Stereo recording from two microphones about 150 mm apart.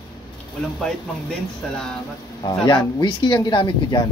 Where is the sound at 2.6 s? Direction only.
30° left (ahead or behind).